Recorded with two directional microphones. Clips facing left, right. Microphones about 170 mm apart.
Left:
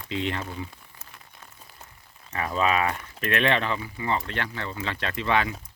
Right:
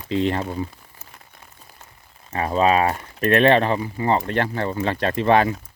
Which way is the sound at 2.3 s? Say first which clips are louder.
Right 6 dB; 35° right (ahead or behind).